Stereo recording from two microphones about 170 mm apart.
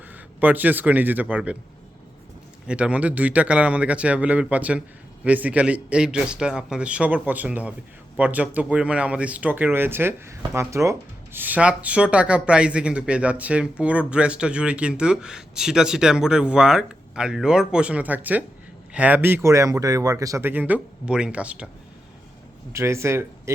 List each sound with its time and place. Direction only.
0.3 s speech: 10° right (ahead or behind)
2.6 s speech: 5° right (ahead or behind)
22.7 s speech: 15° right (ahead or behind)